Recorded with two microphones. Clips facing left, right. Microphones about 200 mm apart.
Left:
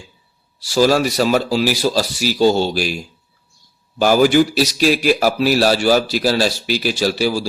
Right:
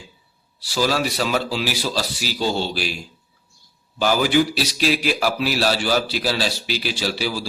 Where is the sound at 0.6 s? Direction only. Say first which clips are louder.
Left 7 dB; 45° left (ahead or behind).